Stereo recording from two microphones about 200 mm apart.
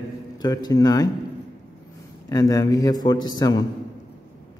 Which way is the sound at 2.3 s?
15° left (ahead or behind).